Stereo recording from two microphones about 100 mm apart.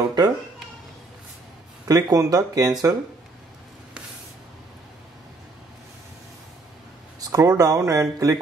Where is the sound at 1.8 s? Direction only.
40° right (ahead or behind).